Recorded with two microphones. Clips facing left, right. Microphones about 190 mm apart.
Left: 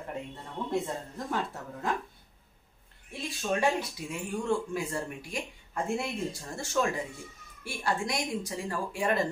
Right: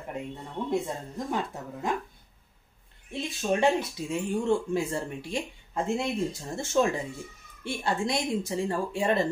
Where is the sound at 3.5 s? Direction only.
25° right (ahead or behind).